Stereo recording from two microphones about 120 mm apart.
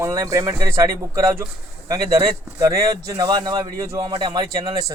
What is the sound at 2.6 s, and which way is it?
A man's voice, 25° right (ahead or behind).